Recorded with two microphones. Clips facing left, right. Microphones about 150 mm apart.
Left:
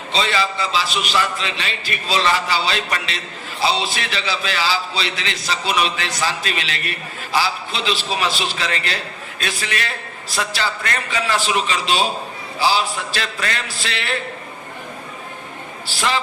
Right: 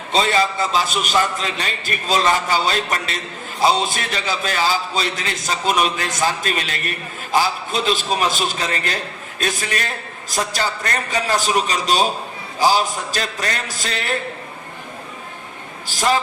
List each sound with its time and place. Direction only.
0.1 s a man's voice: 45° right (ahead or behind)
15.9 s a man's voice: 45° right (ahead or behind)